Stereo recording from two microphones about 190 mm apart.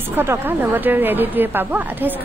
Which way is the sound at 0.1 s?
10° right (ahead or behind).